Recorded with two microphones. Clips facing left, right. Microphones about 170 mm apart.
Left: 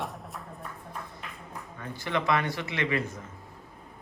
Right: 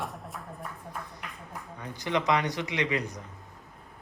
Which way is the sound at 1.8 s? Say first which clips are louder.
Right 1 dB; 15° right (ahead or behind).